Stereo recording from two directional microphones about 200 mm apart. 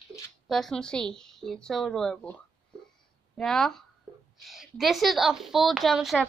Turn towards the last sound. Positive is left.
turn(degrees=0)  # may be behind; listen again after turning